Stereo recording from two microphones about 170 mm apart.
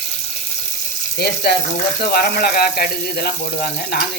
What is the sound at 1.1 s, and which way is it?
Speech, 75° left (ahead or behind).